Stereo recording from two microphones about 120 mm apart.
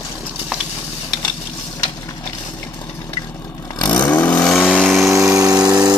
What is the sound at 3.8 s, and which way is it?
Vehicle, 15° left (ahead or behind).